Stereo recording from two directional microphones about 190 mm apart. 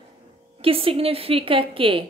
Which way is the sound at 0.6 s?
30° right (ahead or behind).